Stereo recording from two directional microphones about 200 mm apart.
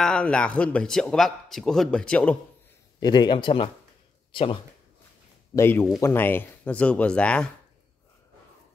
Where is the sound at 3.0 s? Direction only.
20° left (ahead or behind).